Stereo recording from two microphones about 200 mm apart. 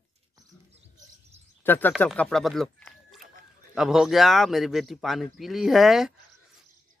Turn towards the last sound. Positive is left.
turn(degrees=0)  # may be behind; listen again after turning